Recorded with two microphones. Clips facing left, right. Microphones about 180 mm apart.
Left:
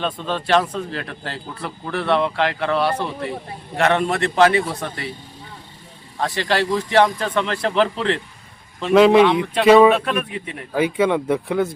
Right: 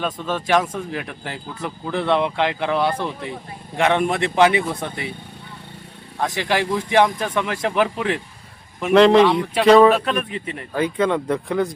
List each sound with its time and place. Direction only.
0.0 s speech: 10° right (ahead or behind)
6.1 s speech: 10° right (ahead or behind)
8.8 s speech: centre (ahead or behind)